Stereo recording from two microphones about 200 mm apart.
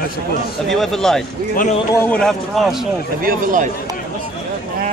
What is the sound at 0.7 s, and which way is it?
Speech, centre (ahead or behind).